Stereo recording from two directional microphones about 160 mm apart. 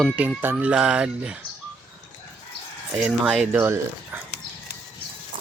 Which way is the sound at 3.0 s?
Centre (ahead or behind).